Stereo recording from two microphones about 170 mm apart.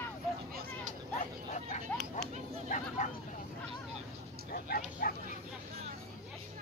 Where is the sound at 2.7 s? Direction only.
45° left (ahead or behind).